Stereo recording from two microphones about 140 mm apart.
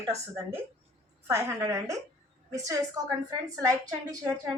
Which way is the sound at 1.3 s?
20° right (ahead or behind).